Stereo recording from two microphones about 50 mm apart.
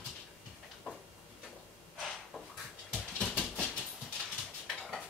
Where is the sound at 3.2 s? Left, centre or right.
Centre.